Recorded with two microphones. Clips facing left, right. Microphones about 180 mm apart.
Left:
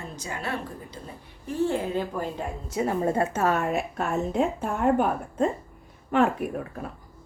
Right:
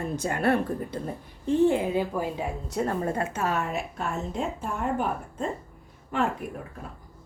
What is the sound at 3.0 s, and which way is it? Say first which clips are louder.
Speech: left 4 dB; 25° left (ahead or behind).